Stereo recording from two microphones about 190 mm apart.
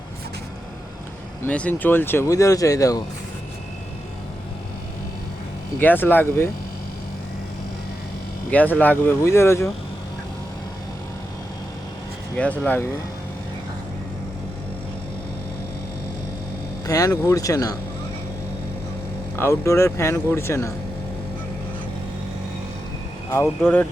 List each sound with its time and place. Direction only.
1.5 s speech: 5° left (ahead or behind)
5.8 s speech: 10° left (ahead or behind)
8.4 s speech: 10° left (ahead or behind)
12.4 s speech: 10° left (ahead or behind)
16.8 s speech: 15° left (ahead or behind)
19.4 s speech: 15° left (ahead or behind)
23.3 s speech: 10° left (ahead or behind)